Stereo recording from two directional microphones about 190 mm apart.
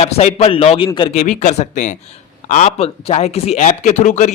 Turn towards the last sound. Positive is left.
turn(degrees=40)  # may be behind; listen again after turning